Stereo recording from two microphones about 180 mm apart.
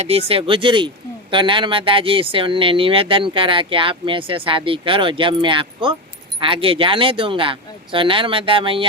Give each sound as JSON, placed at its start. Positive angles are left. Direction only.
{"t": 0.0, "sound": "speech", "side_deg": -35}